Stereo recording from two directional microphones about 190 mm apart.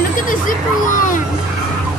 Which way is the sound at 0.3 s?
45° left (ahead or behind).